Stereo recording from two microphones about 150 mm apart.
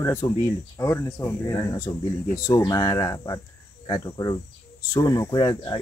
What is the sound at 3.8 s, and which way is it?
Cricket, 30° left (ahead or behind).